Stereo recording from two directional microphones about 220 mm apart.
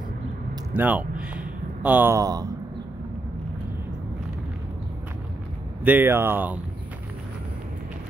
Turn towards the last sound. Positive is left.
turn(degrees=-10)  # may be behind; listen again after turning